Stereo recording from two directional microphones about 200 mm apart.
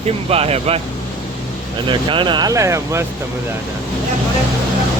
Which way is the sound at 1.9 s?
25° right (ahead or behind).